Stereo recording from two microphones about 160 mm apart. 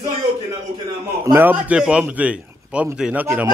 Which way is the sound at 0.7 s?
20° right (ahead or behind).